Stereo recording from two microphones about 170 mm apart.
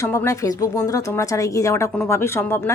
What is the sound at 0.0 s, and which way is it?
A woman's voice, 15° left (ahead or behind).